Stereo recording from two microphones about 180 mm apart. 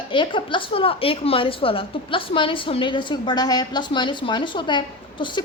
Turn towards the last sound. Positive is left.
turn(degrees=25)  # may be behind; listen again after turning